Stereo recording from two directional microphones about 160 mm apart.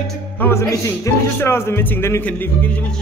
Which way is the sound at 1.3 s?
15° left (ahead or behind).